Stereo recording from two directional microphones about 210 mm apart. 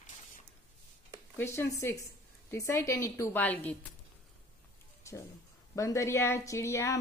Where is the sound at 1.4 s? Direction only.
10° left (ahead or behind).